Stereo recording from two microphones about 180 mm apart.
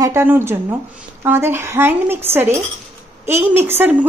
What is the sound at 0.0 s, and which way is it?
A woman's voice, 15° right (ahead or behind).